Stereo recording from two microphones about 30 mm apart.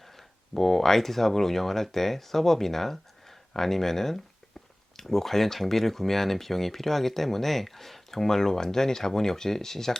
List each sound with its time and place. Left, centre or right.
0.0 s speech: centre